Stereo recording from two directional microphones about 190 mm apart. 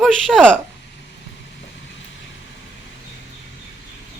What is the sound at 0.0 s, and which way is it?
Speech, centre (ahead or behind).